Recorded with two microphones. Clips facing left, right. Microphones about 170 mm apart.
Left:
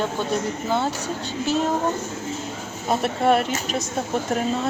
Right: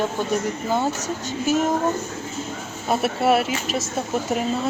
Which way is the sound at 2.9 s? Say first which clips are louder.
Even; 5° right (ahead or behind).